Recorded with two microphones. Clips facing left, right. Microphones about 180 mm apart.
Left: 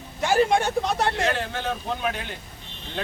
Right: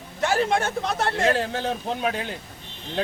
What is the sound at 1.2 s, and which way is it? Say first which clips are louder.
Speech: right 3 dB; 40° right (ahead or behind).